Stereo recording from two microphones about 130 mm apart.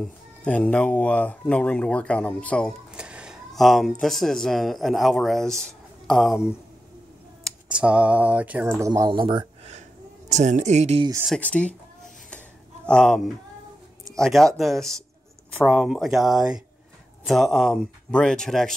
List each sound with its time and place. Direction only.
0.0 s speech: 10° left (ahead or behind)
3.0 s speech: 5° right (ahead or behind)
7.8 s speech: 10° right (ahead or behind); by 9.2 s 25° right (ahead or behind)
9.2 s speech: 40° right (ahead or behind)
10.3 s speech: 65° right (ahead or behind)
11.2 s speech: 10° left (ahead or behind)
12.8 s speech: 5° left (ahead or behind)